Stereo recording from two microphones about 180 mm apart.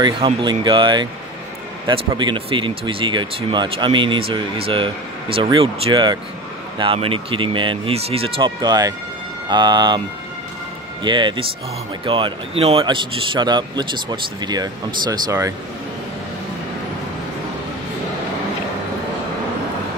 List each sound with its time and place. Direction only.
0.0 s a man's voice: 25° right (ahead or behind)